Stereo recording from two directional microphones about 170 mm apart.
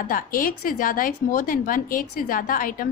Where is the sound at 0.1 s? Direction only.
55° left (ahead or behind).